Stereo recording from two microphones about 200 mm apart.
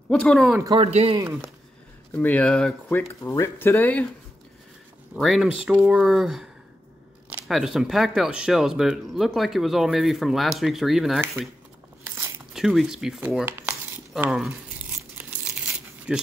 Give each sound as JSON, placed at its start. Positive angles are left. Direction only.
{"t": 0.1, "sound": "speech", "side_deg": 5}
{"t": 0.7, "sound": "speech", "side_deg": -30}
{"t": 1.2, "sound": "speech", "side_deg": -10}
{"t": 2.1, "sound": "speech", "side_deg": 5}
{"t": 5.1, "sound": "speech", "side_deg": 0}
{"t": 12.5, "sound": "crumpling", "side_deg": 0}